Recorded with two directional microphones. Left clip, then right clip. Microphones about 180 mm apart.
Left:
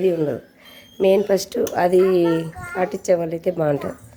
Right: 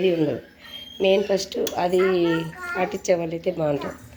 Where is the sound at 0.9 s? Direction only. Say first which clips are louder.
Left 3 dB; 35° left (ahead or behind).